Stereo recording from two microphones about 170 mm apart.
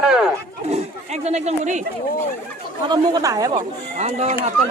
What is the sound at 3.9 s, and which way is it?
Speech, 40° right (ahead or behind).